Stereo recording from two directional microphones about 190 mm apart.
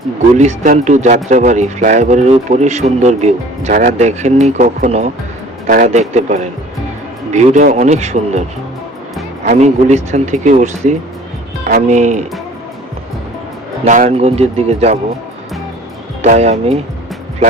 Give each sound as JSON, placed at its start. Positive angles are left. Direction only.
{"t": 0.3, "sound": "speech", "side_deg": -40}
{"t": 5.6, "sound": "speech", "side_deg": -45}
{"t": 13.8, "sound": "speech", "side_deg": -40}
{"t": 16.2, "sound": "speech", "side_deg": -35}